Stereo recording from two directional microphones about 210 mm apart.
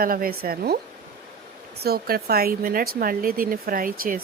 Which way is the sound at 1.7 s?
50° right (ahead or behind).